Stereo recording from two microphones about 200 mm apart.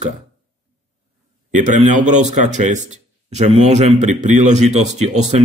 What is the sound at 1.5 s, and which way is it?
Speech, 40° right (ahead or behind).